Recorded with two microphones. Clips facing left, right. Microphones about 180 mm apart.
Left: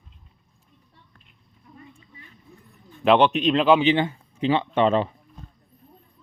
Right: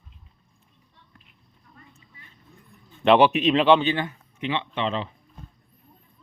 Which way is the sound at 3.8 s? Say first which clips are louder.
Left 5 dB; 20° left (ahead or behind).